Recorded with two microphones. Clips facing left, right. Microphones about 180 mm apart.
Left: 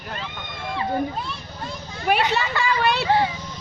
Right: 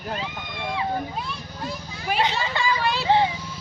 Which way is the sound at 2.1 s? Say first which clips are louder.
Left 3 dB; 60° left (ahead or behind).